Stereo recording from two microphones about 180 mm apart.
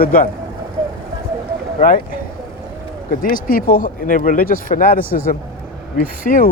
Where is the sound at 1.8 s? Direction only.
50° left (ahead or behind).